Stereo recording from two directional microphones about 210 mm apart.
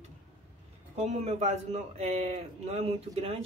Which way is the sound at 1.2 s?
30° right (ahead or behind).